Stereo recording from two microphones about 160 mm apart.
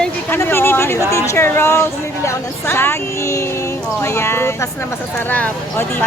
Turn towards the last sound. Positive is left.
turn(degrees=15)  # may be behind; listen again after turning